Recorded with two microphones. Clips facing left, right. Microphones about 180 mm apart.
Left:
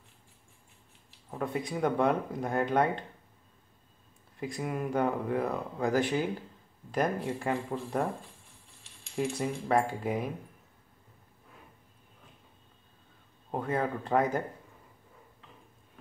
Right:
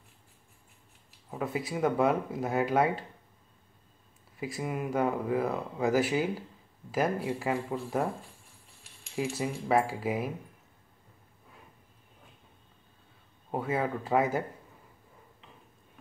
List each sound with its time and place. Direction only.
1.3 s speech: 5° right (ahead or behind)
4.4 s speech: 5° right (ahead or behind)
9.1 s speech: 5° right (ahead or behind)
13.5 s speech: 5° right (ahead or behind)